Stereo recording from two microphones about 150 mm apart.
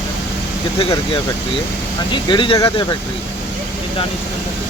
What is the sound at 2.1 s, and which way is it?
Speech, 30° left (ahead or behind).